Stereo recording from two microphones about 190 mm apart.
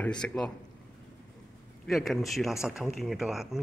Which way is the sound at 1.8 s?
Centre (ahead or behind).